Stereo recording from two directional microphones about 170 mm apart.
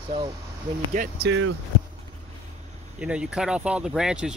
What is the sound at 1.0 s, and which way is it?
Speech, 50° right (ahead or behind).